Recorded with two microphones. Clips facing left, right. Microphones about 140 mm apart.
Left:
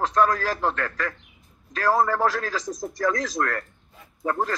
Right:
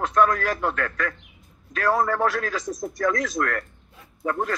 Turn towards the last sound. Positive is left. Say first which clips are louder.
# even
turn(degrees=35)  # may be behind; listen again after turning